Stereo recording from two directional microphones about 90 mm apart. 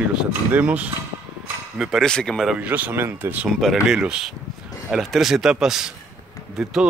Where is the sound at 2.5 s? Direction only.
15° right (ahead or behind).